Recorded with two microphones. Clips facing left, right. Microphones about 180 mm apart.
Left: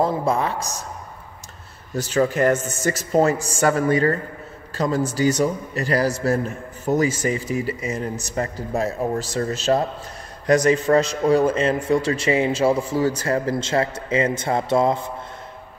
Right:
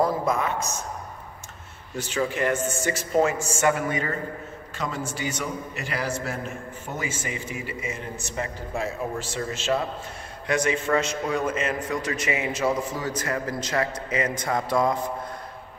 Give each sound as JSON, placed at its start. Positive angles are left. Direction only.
{"t": 0.0, "sound": "speech", "side_deg": 30}
{"t": 2.0, "sound": "a man's voice", "side_deg": 40}